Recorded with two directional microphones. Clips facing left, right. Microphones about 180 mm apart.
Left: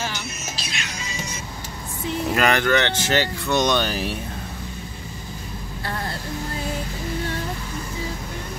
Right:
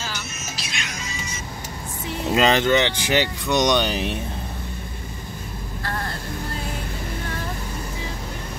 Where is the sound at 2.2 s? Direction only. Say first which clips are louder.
Right 2 dB; 20° right (ahead or behind).